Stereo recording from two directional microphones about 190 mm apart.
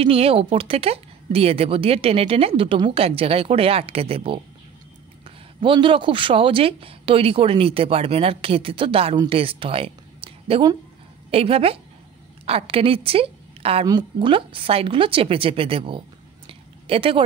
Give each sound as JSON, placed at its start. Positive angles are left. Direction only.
{"t": 0.0, "sound": "a woman's voice", "side_deg": -30}
{"t": 5.6, "sound": "a woman's voice", "side_deg": -25}
{"t": 16.4, "sound": "a sound", "side_deg": -30}